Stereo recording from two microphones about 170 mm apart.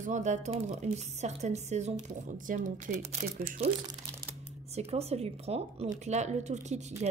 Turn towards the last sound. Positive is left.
turn(degrees=-45)  # may be behind; listen again after turning